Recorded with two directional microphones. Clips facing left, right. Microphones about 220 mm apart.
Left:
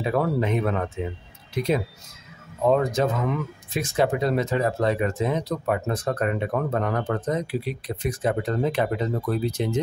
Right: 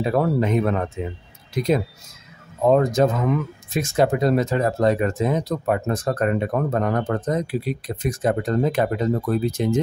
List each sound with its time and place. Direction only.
0.0 s speech: 40° right (ahead or behind)